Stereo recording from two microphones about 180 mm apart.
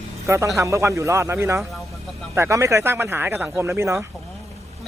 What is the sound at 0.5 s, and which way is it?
Speech, 15° right (ahead or behind).